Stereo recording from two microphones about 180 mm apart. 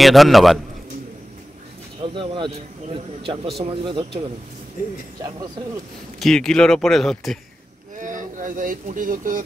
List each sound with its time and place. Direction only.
0.0 s speech: centre (ahead or behind)
2.1 s speech: 25° right (ahead or behind)
6.1 s speech: centre (ahead or behind)
8.0 s speech: 45° right (ahead or behind)